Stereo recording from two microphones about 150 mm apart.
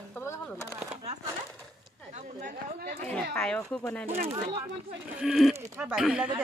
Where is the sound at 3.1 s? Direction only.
5° left (ahead or behind).